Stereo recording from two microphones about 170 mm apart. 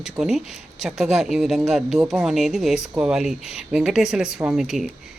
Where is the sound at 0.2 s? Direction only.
Centre (ahead or behind).